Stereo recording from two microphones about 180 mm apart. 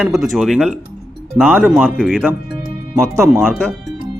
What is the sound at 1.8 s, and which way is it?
Speech, 5° left (ahead or behind).